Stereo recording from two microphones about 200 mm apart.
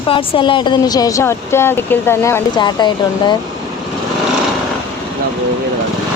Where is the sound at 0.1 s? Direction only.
25° left (ahead or behind).